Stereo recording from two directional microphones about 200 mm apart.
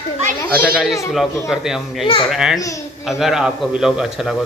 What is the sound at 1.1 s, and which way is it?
A man's voice, centre (ahead or behind).